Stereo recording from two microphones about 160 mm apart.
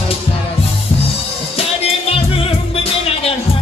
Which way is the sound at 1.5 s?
35° left (ahead or behind).